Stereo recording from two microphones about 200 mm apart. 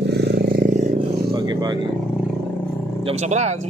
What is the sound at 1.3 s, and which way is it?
Vehicle, 20° right (ahead or behind).